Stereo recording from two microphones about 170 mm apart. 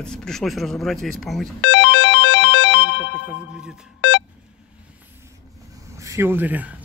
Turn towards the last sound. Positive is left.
turn(degrees=-10)  # may be behind; listen again after turning